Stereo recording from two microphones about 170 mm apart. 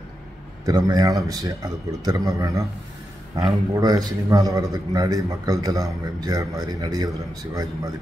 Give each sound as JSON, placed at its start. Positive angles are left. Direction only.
{"t": 0.7, "sound": "a man's voice", "side_deg": -20}
{"t": 3.7, "sound": "a man's voice", "side_deg": -20}